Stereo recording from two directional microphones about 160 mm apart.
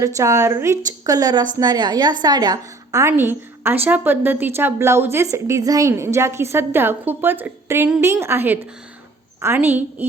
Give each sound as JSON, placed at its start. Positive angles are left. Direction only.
{"t": 0.0, "sound": "a woman's voice", "side_deg": -20}